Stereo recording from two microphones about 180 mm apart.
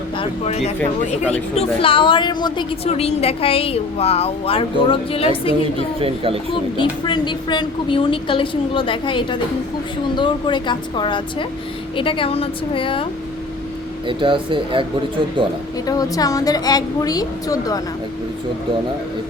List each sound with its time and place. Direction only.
0.2 s a woman's voice: 35° left (ahead or behind)
6.0 s speech: 30° right (ahead or behind)
6.7 s a woman's voice: 25° left (ahead or behind)
14.1 s speech: 30° right (ahead or behind)
15.9 s a woman's voice: 20° left (ahead or behind)